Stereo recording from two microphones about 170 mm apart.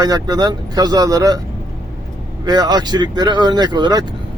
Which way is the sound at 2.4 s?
25° right (ahead or behind).